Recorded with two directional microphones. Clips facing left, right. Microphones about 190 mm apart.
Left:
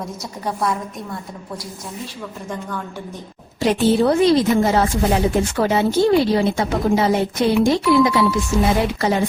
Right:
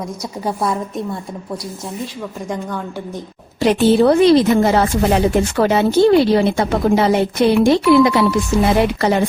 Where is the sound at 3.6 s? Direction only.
70° right (ahead or behind).